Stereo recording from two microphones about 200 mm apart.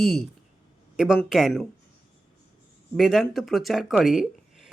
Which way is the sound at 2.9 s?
Centre (ahead or behind).